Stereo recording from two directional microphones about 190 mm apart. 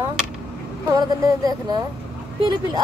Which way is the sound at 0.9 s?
20° right (ahead or behind).